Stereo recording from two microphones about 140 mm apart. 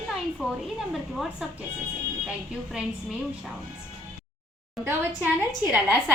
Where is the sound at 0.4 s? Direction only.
5° right (ahead or behind).